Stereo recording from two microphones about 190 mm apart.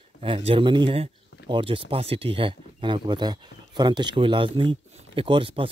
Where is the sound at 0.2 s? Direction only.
30° right (ahead or behind).